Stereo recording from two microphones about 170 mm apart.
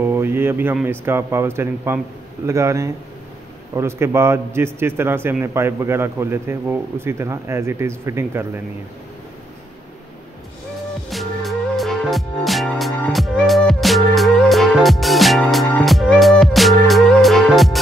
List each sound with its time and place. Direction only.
0.0 s a sound: 15° right (ahead or behind)
0.8 s speech: 15° right (ahead or behind)
11.1 s music: centre (ahead or behind)